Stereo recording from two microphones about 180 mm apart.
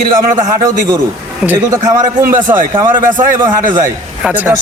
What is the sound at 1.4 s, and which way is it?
A man's voice, 15° right (ahead or behind).